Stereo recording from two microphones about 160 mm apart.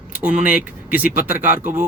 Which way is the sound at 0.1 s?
10° right (ahead or behind).